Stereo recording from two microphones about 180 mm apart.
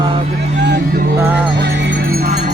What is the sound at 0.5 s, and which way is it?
Music, 70° right (ahead or behind).